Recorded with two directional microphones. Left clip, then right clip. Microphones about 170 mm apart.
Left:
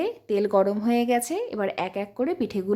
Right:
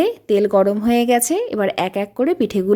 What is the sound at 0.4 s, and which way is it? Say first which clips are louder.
A woman's voice: right 5 dB; 15° right (ahead or behind).